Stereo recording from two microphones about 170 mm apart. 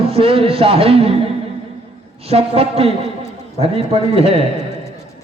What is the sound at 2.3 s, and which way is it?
A man's voice, 35° right (ahead or behind).